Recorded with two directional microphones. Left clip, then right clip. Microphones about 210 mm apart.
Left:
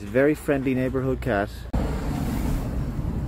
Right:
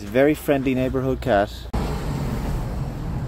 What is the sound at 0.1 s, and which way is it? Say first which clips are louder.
Speech: right 3 dB; 10° right (ahead or behind).